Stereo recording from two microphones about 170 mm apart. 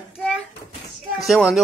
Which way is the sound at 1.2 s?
Centre (ahead or behind).